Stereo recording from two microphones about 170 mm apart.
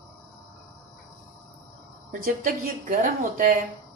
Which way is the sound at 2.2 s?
55° right (ahead or behind).